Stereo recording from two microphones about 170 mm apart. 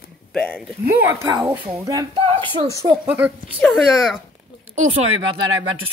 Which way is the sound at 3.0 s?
5° right (ahead or behind).